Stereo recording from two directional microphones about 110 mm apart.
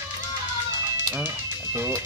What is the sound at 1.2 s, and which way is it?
Music, 20° right (ahead or behind).